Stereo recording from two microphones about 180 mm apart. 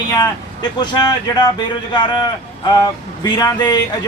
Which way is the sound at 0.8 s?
20° left (ahead or behind).